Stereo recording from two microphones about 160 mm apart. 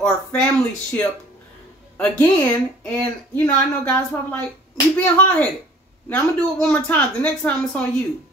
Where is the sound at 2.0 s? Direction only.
10° left (ahead or behind).